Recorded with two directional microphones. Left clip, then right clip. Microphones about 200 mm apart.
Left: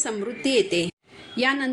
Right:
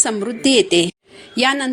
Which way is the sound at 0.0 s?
40° right (ahead or behind).